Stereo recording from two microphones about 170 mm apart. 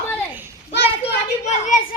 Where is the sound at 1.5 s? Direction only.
45° left (ahead or behind).